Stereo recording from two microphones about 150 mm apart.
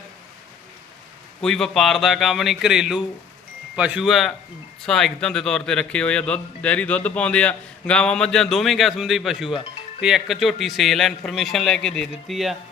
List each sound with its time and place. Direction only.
1.4 s a man's voice: 5° left (ahead or behind)